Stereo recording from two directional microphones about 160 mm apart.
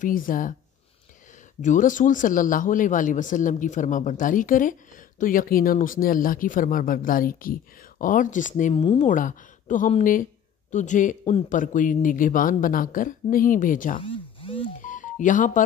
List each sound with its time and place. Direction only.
0.0 s speech: 60° left (ahead or behind)
1.6 s speech: 50° left (ahead or behind)
14.0 s a sound: 35° left (ahead or behind)
14.8 s music: 55° left (ahead or behind)